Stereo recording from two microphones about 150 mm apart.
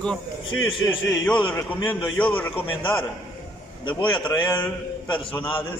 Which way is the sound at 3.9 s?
30° left (ahead or behind).